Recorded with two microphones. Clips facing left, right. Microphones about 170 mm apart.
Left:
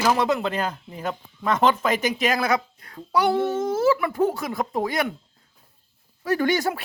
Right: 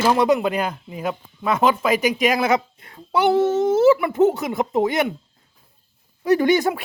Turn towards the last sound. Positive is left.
turn(degrees=-15)  # may be behind; listen again after turning